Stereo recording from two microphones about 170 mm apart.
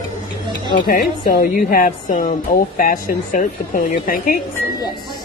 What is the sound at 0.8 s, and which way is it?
A woman's voice, 60° left (ahead or behind).